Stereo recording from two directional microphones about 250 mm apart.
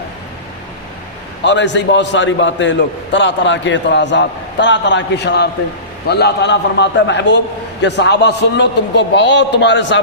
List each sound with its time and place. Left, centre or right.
1.5 s a man's voice: left